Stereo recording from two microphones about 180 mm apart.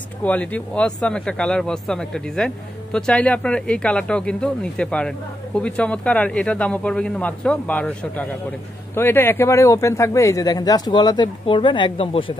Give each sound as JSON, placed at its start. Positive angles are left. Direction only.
{"t": 0.2, "sound": "speech", "side_deg": 10}